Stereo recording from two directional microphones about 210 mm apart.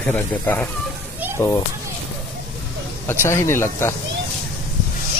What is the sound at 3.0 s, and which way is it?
Speech, 10° left (ahead or behind).